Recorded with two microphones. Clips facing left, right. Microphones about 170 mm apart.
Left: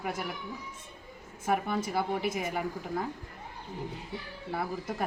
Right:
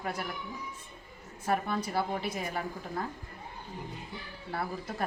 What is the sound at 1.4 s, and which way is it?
A woman's voice, 15° left (ahead or behind).